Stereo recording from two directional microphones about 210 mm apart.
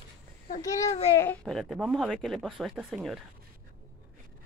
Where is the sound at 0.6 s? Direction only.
15° left (ahead or behind).